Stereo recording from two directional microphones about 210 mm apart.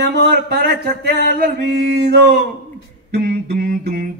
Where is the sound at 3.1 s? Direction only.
50° right (ahead or behind).